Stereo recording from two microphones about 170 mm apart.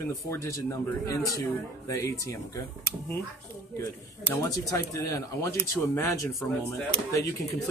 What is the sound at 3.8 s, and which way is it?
Speech, 20° left (ahead or behind).